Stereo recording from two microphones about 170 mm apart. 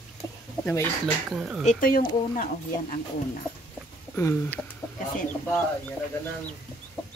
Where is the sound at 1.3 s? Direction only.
5° right (ahead or behind).